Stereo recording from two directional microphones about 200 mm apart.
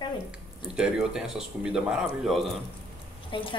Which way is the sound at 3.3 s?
25° left (ahead or behind).